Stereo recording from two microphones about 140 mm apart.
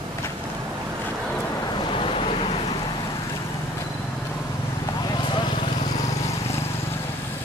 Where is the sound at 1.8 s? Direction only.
35° left (ahead or behind).